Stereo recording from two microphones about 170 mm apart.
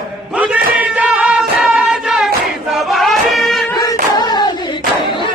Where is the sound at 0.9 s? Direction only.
5° right (ahead or behind).